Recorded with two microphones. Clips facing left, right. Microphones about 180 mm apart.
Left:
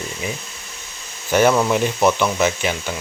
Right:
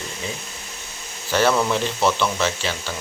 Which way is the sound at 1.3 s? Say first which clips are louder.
Left 4 dB; 15° left (ahead or behind).